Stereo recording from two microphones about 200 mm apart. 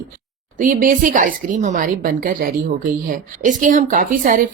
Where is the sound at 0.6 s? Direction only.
40° right (ahead or behind).